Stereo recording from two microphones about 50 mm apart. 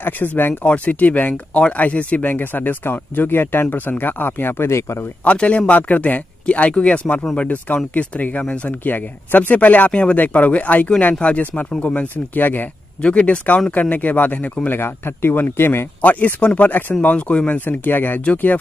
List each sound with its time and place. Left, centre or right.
0.0 s speech: left
1.3 s speech: left
5.2 s a man's voice: left
13.0 s a man's voice: left
14.7 s speech: left
16.0 s a man's voice: left
17.6 s a man's voice: left